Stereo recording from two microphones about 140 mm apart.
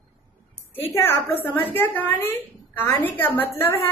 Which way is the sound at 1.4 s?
15° left (ahead or behind).